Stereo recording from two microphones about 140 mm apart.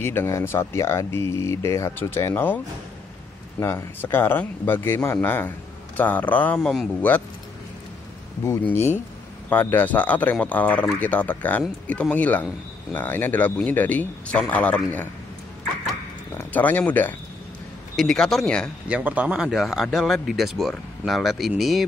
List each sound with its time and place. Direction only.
0.0 s speech: 15° left (ahead or behind)
8.5 s speech: 15° left (ahead or behind)
16.3 s speech: 10° left (ahead or behind)
18.9 s speech: 10° right (ahead or behind)